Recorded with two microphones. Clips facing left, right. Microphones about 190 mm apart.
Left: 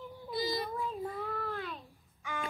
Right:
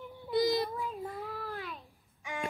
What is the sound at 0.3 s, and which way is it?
Child singing, 70° right (ahead or behind).